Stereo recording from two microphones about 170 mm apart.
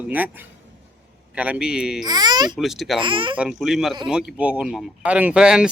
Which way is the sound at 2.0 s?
25° right (ahead or behind).